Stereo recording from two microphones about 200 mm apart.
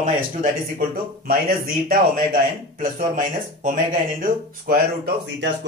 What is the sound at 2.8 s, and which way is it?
A man's voice, 40° right (ahead or behind).